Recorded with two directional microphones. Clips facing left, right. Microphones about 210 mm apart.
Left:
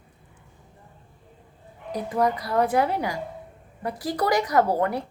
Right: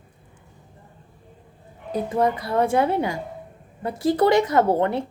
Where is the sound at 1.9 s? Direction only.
25° right (ahead or behind).